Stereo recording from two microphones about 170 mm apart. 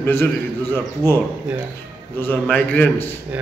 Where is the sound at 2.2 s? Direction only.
10° left (ahead or behind).